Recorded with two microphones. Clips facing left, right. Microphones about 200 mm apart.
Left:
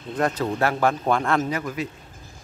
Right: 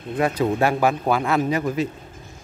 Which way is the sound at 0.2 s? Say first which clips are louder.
Right 3 dB; 15° right (ahead or behind).